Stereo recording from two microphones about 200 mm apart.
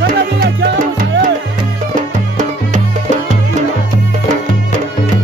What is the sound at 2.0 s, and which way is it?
Music, 40° right (ahead or behind).